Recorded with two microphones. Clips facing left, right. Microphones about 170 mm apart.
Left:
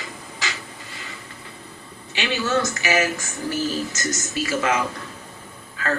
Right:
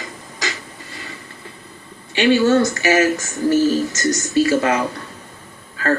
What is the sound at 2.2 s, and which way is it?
Speech, 40° right (ahead or behind).